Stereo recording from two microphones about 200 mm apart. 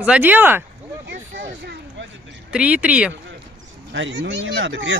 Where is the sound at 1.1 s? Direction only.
60° right (ahead or behind).